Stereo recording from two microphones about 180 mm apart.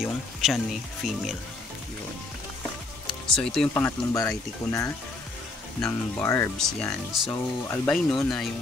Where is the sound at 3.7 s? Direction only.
15° left (ahead or behind).